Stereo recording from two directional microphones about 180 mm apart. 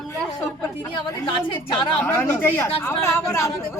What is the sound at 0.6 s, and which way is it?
A woman's voice, 15° left (ahead or behind).